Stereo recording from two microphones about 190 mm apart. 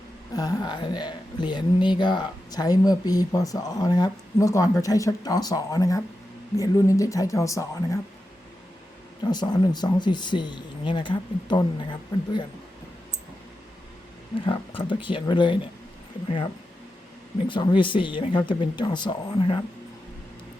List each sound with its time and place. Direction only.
0.3 s speech: 20° left (ahead or behind)
9.3 s speech: 20° left (ahead or behind)
14.4 s speech: 25° left (ahead or behind)
17.5 s speech: 25° left (ahead or behind)